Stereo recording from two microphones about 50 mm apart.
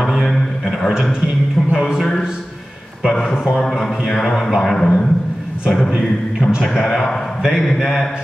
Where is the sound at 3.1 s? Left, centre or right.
Centre.